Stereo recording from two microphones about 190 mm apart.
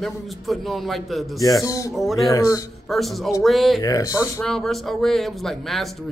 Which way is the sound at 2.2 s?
15° left (ahead or behind).